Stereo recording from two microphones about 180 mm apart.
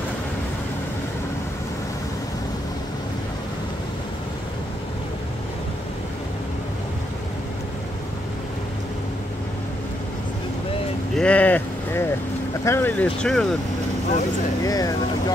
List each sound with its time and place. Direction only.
11.1 s a sound: 5° left (ahead or behind)
12.6 s speech: 10° left (ahead or behind)
14.6 s speech: 20° left (ahead or behind)